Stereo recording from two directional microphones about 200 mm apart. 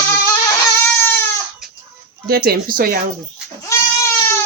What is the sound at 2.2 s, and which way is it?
Speech, 50° right (ahead or behind).